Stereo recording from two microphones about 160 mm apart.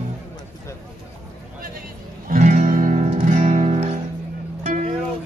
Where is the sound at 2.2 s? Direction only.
55° right (ahead or behind).